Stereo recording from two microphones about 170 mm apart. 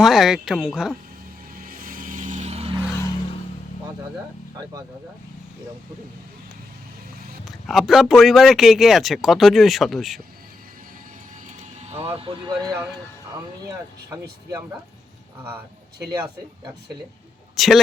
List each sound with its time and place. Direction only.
0.0 s a man's voice: centre (ahead or behind)
1.5 s vehicle: 60° right (ahead or behind); by 2.7 s 35° right (ahead or behind)
7.4 s a man's voice: centre (ahead or behind)
11.8 s speech: 40° right (ahead or behind)
17.6 s a man's voice: centre (ahead or behind)